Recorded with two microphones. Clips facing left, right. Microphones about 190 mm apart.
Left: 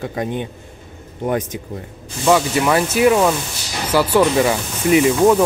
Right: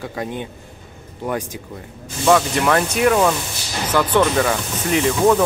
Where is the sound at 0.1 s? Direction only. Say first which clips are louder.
Left 3 dB; 20° left (ahead or behind).